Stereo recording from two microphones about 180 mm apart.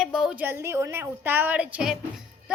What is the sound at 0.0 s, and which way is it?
A woman's voice, 5° right (ahead or behind).